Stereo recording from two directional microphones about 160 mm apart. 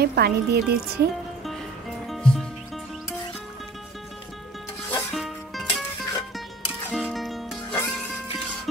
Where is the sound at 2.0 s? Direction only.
Centre (ahead or behind).